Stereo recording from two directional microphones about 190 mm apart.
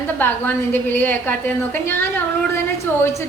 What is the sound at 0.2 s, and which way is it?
A woman's voice, 10° left (ahead or behind).